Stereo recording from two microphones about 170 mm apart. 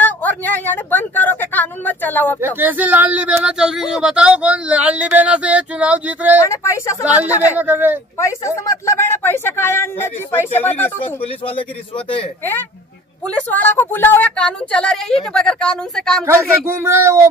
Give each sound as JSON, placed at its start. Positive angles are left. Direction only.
{"t": 0.0, "sound": "speech", "side_deg": 10}
{"t": 2.4, "sound": "speech", "side_deg": -10}
{"t": 6.5, "sound": "speech", "side_deg": 15}
{"t": 7.1, "sound": "speech", "side_deg": -10}
{"t": 8.2, "sound": "speech", "side_deg": 15}
{"t": 13.3, "sound": "a woman's voice", "side_deg": 10}
{"t": 16.3, "sound": "speech", "side_deg": -15}